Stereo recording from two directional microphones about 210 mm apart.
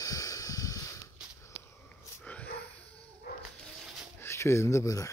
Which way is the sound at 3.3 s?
45° left (ahead or behind).